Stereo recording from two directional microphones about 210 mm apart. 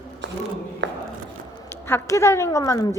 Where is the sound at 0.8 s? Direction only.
60° right (ahead or behind).